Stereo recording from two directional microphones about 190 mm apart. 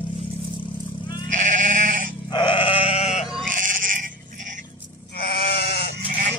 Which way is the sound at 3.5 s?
45° right (ahead or behind).